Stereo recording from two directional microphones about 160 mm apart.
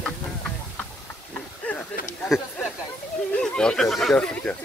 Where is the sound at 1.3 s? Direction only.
10° left (ahead or behind).